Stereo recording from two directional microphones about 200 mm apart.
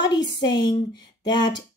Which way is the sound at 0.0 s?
20° left (ahead or behind).